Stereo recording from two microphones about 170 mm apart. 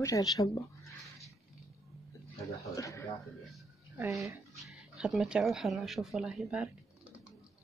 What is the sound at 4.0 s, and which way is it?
Speech, 15° right (ahead or behind).